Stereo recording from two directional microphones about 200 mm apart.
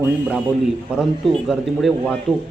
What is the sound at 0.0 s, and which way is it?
Speech, 5° right (ahead or behind).